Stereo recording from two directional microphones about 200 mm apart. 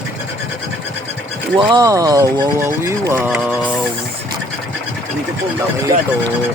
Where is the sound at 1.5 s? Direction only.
20° right (ahead or behind).